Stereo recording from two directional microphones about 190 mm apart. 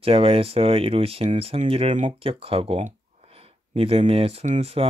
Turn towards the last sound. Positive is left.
turn(degrees=-35)  # may be behind; listen again after turning